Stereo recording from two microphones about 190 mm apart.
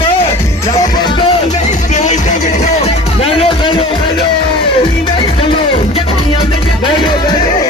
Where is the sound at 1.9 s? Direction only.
40° left (ahead or behind).